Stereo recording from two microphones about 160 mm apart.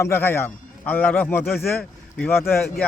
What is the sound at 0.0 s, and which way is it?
A man's voice, 15° left (ahead or behind).